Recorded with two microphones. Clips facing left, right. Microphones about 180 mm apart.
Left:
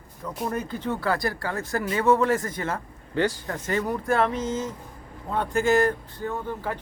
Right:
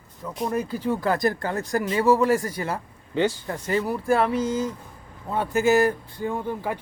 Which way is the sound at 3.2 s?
25° right (ahead or behind).